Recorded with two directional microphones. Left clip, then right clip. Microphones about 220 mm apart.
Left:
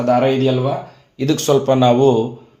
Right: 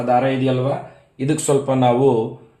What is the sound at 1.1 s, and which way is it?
Speech, 35° left (ahead or behind).